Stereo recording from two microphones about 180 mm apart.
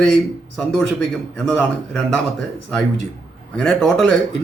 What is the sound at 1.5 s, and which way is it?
Speech, 5° left (ahead or behind).